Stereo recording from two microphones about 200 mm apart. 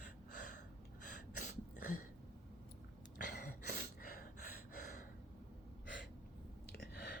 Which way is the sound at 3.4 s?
40° left (ahead or behind).